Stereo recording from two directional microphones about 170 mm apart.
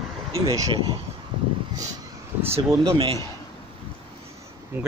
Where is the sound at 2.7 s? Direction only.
20° right (ahead or behind).